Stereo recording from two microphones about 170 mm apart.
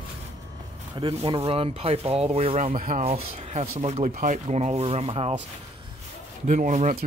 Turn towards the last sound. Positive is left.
turn(degrees=-45)  # may be behind; listen again after turning